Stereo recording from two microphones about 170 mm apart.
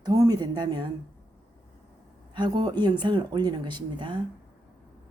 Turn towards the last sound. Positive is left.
turn(degrees=-30)  # may be behind; listen again after turning